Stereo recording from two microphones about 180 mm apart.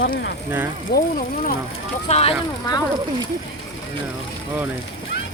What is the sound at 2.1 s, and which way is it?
Speech, 35° left (ahead or behind).